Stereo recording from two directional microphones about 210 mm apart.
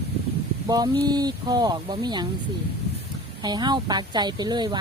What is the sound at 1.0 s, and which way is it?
Speech, 20° right (ahead or behind).